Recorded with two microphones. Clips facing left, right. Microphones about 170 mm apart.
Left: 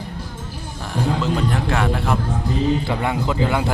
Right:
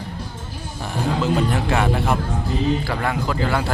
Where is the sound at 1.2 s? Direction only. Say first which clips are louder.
Right 1 dB; 5° right (ahead or behind).